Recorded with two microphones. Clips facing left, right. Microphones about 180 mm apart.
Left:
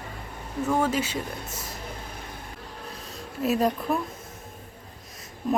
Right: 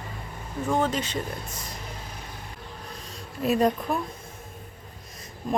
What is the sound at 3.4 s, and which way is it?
Speech, centre (ahead or behind).